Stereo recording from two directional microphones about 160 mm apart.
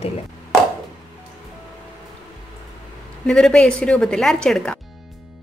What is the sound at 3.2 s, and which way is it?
A woman's voice, 5° left (ahead or behind).